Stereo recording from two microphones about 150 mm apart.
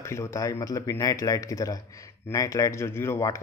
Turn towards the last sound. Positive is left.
turn(degrees=20)  # may be behind; listen again after turning